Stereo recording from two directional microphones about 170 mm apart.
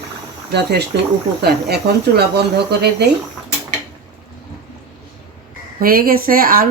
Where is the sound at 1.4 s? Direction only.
75° right (ahead or behind).